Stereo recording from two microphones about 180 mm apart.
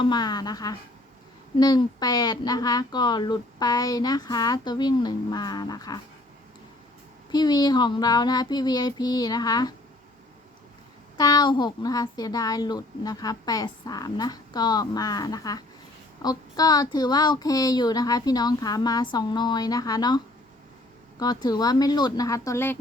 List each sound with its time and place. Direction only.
0.0 s speech: 25° left (ahead or behind)
7.3 s speech: 20° left (ahead or behind)
11.2 s speech: 20° left (ahead or behind)